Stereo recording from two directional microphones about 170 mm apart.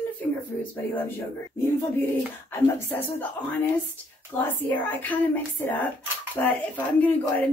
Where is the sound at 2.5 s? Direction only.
10° left (ahead or behind).